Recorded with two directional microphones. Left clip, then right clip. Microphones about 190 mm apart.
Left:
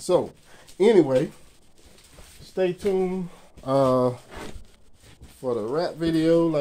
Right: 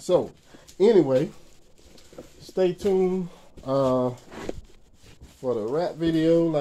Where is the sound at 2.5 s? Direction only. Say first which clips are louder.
Right 1 dB; 10° right (ahead or behind).